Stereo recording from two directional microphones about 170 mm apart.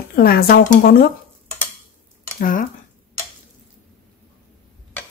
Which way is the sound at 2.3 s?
55° left (ahead or behind).